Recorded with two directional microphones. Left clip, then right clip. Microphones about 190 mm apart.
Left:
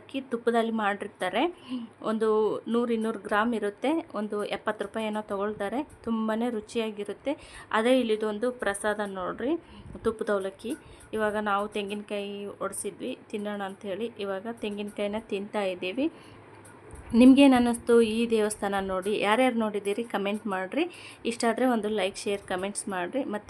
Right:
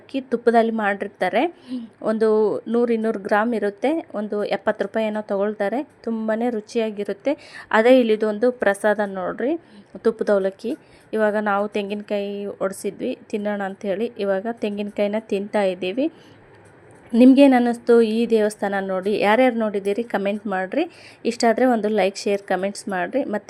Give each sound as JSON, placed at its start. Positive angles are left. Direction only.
{"t": 0.1, "sound": "a woman's voice", "side_deg": -20}
{"t": 17.3, "sound": "a woman's voice", "side_deg": -20}